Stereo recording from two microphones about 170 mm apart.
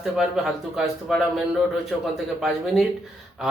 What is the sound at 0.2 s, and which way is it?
Speech, centre (ahead or behind).